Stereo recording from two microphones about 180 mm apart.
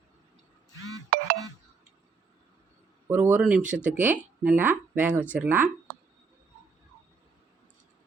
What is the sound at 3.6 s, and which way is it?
Speech, 45° right (ahead or behind).